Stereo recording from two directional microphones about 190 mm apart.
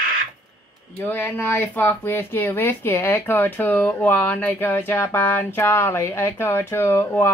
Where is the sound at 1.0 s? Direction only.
10° left (ahead or behind).